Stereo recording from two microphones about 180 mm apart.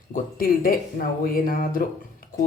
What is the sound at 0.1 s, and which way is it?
Speech, 50° left (ahead or behind).